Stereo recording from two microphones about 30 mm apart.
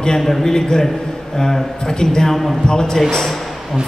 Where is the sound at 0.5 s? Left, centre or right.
Left.